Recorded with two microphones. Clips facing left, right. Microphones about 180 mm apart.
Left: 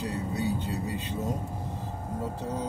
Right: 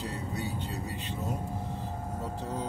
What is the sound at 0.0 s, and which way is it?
Vehicle, 15° left (ahead or behind).